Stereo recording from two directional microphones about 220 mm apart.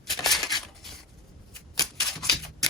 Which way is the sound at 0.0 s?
Centre (ahead or behind).